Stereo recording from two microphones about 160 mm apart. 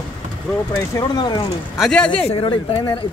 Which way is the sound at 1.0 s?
25° left (ahead or behind).